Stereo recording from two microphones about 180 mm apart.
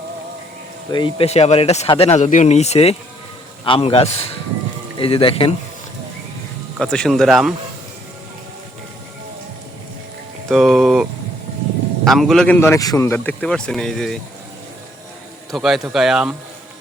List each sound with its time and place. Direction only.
0.9 s speech: 30° left (ahead or behind)
6.7 s speech: 5° left (ahead or behind)
10.5 s speech: centre (ahead or behind)
12.0 s speech: centre (ahead or behind)
15.5 s speech: centre (ahead or behind)